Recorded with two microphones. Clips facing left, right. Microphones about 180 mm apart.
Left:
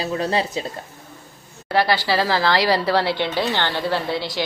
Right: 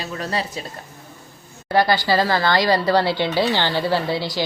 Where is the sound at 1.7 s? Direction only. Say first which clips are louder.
Right 2 dB; 5° left (ahead or behind).